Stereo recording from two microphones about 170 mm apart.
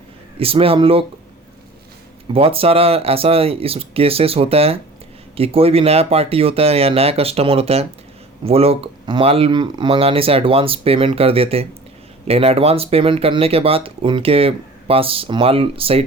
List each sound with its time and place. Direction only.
0.3 s speech: 35° right (ahead or behind)
2.3 s speech: 35° right (ahead or behind)